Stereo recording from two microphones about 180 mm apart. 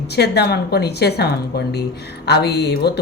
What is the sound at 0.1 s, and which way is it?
Speech, 65° left (ahead or behind).